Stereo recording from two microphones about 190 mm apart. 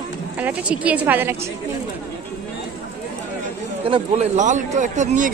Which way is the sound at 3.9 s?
35° right (ahead or behind).